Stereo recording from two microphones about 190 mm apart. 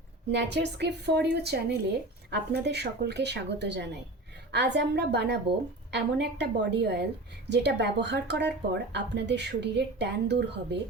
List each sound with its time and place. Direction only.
0.3 s a woman's voice: 65° right (ahead or behind)